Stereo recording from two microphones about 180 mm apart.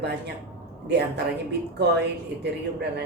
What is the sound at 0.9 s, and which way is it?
Speech, 70° right (ahead or behind).